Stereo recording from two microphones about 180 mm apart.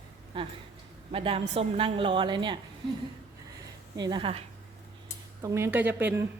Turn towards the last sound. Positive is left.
turn(degrees=-10)  # may be behind; listen again after turning